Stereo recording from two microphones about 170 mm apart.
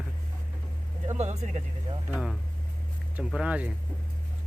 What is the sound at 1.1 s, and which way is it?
Speech, 45° right (ahead or behind).